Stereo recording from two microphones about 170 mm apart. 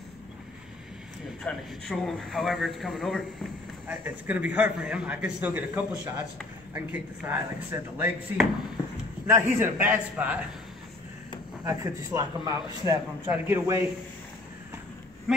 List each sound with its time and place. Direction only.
1.4 s a man's voice: centre (ahead or behind)
3.8 s a man's voice: 10° right (ahead or behind)
11.6 s a man's voice: 20° right (ahead or behind)